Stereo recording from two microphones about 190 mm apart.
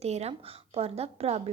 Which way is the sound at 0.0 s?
35° right (ahead or behind).